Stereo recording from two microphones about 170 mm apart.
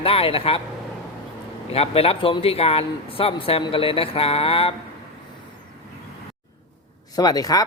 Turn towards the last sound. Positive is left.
turn(degrees=20)  # may be behind; listen again after turning